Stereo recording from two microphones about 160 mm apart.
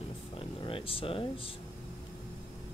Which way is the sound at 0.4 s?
35° left (ahead or behind).